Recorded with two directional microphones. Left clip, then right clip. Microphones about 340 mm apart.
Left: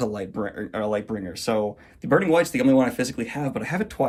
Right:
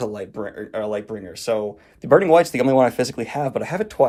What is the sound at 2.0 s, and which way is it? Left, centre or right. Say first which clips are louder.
Speech: right 6 dB; centre.